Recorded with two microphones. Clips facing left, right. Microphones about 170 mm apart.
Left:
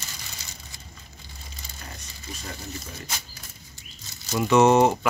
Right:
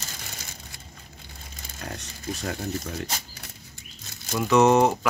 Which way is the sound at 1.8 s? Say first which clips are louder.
Right 8 dB; 70° right (ahead or behind).